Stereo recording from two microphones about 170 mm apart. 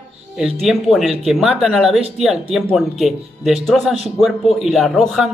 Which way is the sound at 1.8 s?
35° right (ahead or behind).